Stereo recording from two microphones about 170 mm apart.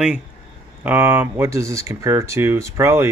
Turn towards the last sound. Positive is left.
turn(degrees=-15)  # may be behind; listen again after turning